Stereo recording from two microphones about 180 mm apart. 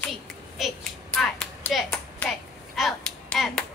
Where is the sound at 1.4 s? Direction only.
Centre (ahead or behind).